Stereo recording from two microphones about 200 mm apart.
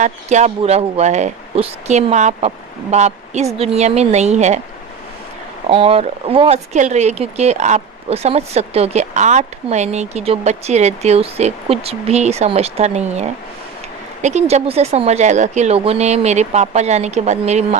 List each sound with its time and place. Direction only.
0.0 s speech: 35° right (ahead or behind)
5.6 s speech: 30° right (ahead or behind)